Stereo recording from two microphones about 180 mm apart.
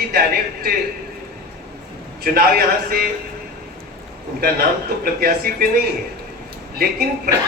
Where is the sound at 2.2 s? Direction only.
55° right (ahead or behind).